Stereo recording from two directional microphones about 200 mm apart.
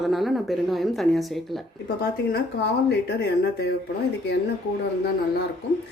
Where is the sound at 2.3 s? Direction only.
55° left (ahead or behind).